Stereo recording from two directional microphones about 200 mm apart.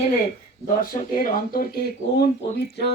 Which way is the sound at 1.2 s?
50° left (ahead or behind).